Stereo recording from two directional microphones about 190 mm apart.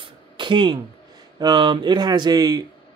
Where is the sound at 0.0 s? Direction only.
25° right (ahead or behind).